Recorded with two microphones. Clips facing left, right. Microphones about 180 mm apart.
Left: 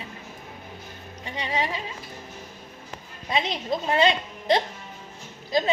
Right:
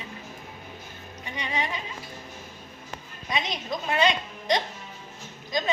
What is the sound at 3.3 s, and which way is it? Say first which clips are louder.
A woman's voice: left 4 dB; 30° left (ahead or behind).